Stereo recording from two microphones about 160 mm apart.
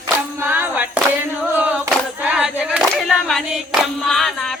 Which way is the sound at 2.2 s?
5° right (ahead or behind).